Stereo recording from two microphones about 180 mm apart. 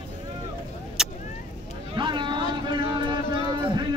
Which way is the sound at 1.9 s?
25° right (ahead or behind).